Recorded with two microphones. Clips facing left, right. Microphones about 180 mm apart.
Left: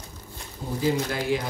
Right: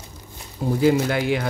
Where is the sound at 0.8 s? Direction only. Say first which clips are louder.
Right 6 dB; 65° right (ahead or behind).